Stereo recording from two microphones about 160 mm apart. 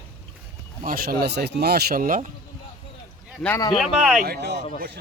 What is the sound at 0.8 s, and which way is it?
Speech, 65° right (ahead or behind).